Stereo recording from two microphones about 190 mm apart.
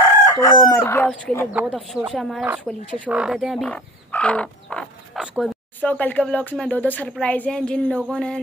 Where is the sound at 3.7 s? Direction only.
5° left (ahead or behind).